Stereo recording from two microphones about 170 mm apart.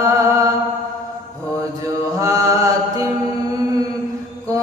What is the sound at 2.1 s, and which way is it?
Mantra, 20° right (ahead or behind).